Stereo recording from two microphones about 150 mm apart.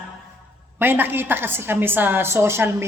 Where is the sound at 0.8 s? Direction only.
15° right (ahead or behind).